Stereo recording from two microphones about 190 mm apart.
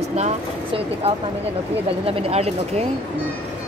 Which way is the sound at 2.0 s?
30° right (ahead or behind).